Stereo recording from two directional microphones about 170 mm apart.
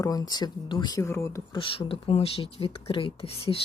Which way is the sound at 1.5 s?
30° left (ahead or behind).